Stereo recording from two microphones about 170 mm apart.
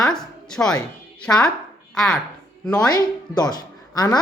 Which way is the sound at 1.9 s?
5° left (ahead or behind).